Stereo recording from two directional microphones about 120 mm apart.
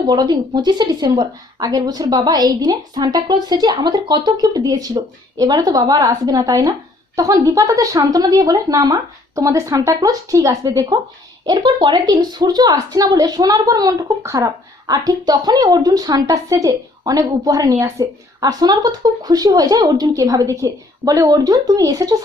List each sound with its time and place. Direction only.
0.0 s a woman's voice: 35° right (ahead or behind)